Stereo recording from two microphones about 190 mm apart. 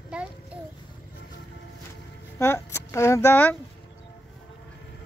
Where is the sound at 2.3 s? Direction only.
15° left (ahead or behind).